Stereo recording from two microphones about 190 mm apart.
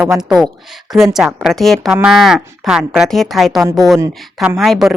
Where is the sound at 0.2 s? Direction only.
Centre (ahead or behind).